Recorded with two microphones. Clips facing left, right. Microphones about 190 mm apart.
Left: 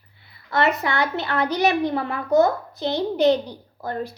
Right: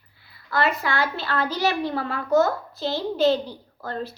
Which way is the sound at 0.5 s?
20° left (ahead or behind).